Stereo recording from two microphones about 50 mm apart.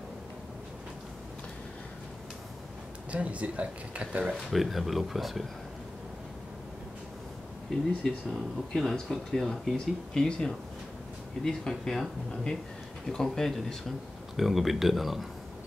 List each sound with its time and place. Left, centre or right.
3.1 s speech: right
4.5 s speech: centre
8.3 s speech: centre
14.3 s speech: centre